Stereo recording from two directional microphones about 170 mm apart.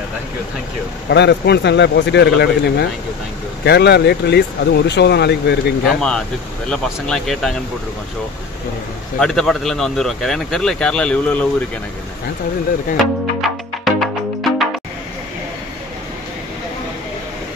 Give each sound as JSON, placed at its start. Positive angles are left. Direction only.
{"t": 1.1, "sound": "speech", "side_deg": 80}
{"t": 5.9, "sound": "speech", "side_deg": 5}
{"t": 9.2, "sound": "speech", "side_deg": 0}
{"t": 12.9, "sound": "music", "side_deg": 0}